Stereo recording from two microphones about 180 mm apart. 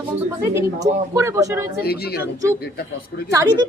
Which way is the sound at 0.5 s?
15° right (ahead or behind).